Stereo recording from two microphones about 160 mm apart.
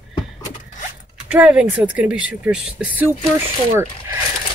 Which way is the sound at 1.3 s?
10° right (ahead or behind).